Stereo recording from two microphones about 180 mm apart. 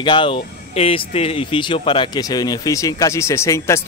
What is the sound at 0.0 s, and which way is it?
A man's voice, 25° left (ahead or behind).